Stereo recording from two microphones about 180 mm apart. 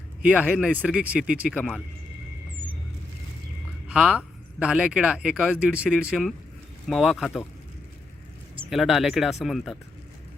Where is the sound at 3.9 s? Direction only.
5° right (ahead or behind).